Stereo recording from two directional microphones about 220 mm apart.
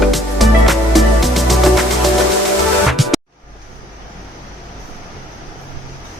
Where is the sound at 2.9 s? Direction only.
Centre (ahead or behind).